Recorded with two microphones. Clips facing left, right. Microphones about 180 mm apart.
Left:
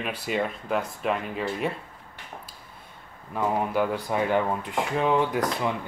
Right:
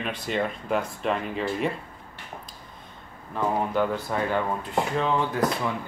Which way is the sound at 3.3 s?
10° left (ahead or behind).